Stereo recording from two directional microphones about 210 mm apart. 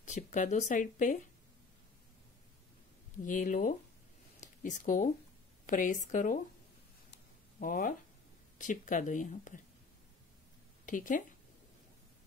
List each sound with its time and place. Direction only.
0.0 s speech: 35° left (ahead or behind)
3.3 s speech: 40° left (ahead or behind)
7.6 s speech: 40° left (ahead or behind)
10.9 s speech: 40° left (ahead or behind)